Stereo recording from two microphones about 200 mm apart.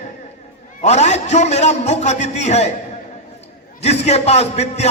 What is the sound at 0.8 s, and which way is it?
A man's voice, 35° left (ahead or behind).